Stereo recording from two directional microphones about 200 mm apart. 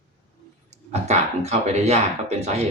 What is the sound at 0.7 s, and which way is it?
Speech, 35° right (ahead or behind).